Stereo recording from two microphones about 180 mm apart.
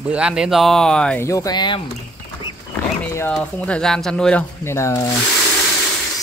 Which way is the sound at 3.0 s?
10° left (ahead or behind).